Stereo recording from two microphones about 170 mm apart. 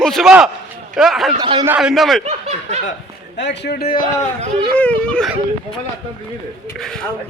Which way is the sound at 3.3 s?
90° left.